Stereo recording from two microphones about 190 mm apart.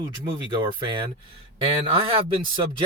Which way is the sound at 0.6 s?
25° right (ahead or behind).